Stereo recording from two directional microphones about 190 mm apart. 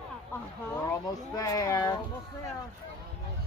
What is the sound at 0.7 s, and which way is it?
Speech, 15° left (ahead or behind).